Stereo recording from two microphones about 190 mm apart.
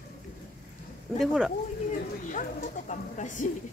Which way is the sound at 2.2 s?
40° left (ahead or behind).